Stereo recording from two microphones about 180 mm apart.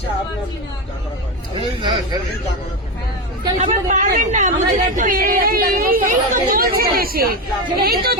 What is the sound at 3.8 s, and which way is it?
A woman's voice, 45° right (ahead or behind).